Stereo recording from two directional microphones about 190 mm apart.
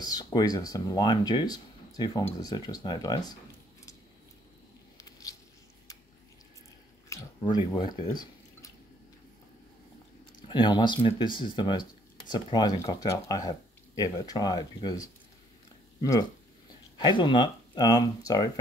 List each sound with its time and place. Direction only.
0.0 s speech: 20° left (ahead or behind)
7.1 s drip: 20° left (ahead or behind)
10.5 s speech: 25° left (ahead or behind)